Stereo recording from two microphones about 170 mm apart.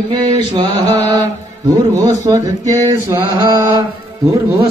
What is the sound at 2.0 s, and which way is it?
Mantra, 20° right (ahead or behind).